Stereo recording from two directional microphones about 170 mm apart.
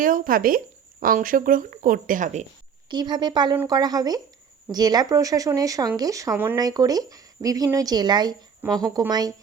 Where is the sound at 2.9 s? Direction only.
25° right (ahead or behind).